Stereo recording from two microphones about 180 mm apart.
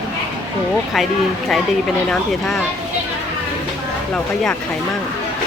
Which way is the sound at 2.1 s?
Centre (ahead or behind).